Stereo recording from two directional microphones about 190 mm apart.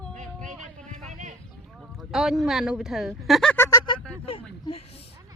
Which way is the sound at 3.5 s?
15° left (ahead or behind).